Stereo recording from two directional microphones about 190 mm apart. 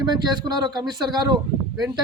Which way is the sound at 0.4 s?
20° right (ahead or behind).